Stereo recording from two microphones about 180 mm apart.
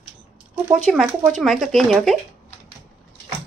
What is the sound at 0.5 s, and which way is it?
Speech, 5° right (ahead or behind).